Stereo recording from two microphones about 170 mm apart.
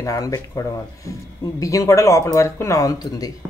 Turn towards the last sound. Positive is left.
turn(degrees=20)  # may be behind; listen again after turning